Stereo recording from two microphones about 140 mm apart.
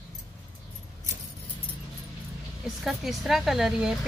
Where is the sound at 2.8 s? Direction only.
Centre (ahead or behind).